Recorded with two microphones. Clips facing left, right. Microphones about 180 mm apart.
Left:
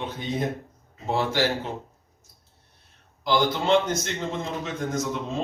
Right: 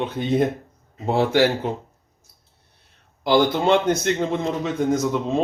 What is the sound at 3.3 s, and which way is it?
Speech, 60° right (ahead or behind).